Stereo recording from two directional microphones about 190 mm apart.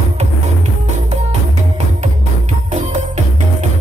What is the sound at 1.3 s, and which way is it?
Music, 35° right (ahead or behind).